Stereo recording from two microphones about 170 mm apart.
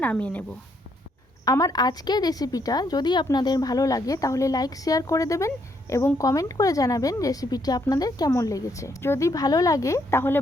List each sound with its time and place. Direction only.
0.0 s speech: 10° left (ahead or behind)
1.5 s a woman's voice: 20° left (ahead or behind)